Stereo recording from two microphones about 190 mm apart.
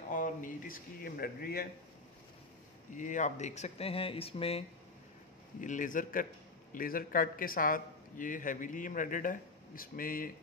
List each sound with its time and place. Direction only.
0.1 s a man's voice: 45° left (ahead or behind)
2.9 s speech: 40° left (ahead or behind)
5.6 s a man's voice: 45° left (ahead or behind)